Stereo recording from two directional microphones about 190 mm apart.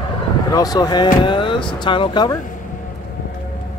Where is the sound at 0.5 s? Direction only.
20° left (ahead or behind).